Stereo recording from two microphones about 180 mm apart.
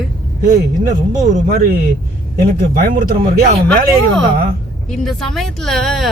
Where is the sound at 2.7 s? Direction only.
55° right (ahead or behind).